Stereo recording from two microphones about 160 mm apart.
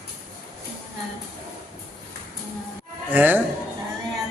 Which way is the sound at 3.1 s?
10° right (ahead or behind).